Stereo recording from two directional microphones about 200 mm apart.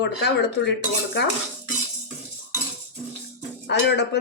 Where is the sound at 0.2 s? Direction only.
60° left (ahead or behind).